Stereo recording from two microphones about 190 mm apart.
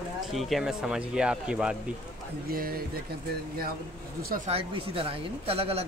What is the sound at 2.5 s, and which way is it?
Speech, 50° right (ahead or behind).